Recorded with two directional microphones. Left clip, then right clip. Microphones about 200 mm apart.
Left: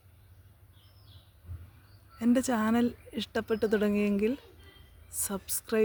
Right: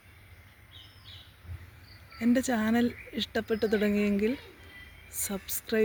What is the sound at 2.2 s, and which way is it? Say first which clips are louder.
Speech: even; 25° left (ahead or behind).